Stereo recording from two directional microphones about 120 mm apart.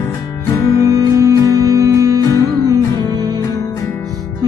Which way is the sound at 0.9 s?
25° right (ahead or behind).